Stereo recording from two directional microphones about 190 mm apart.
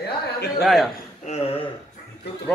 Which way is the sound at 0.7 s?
Centre (ahead or behind).